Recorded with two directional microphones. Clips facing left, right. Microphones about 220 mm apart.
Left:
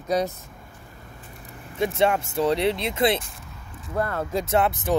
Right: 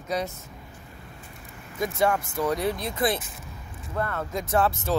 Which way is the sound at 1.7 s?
30° left (ahead or behind).